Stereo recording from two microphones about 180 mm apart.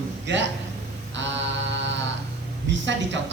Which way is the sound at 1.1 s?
85° right.